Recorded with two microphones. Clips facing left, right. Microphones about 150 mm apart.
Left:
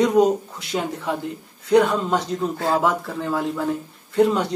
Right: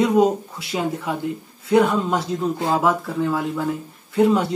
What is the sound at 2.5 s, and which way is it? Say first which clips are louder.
Speech: left 1 dB; 20° right (ahead or behind).